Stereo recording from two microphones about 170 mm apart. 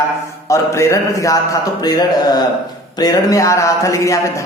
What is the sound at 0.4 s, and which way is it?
A man's voice, 15° left (ahead or behind).